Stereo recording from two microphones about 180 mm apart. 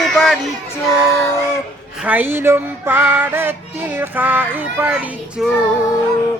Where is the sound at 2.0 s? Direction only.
10° right (ahead or behind).